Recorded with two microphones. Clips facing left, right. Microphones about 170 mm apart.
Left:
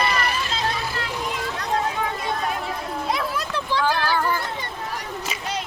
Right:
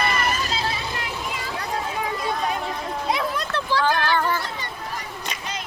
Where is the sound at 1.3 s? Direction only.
5° right (ahead or behind).